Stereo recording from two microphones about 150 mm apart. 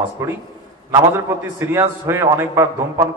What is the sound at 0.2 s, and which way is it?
Speech, 15° right (ahead or behind).